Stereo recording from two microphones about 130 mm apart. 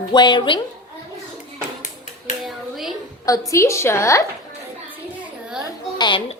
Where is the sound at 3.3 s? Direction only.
25° left (ahead or behind).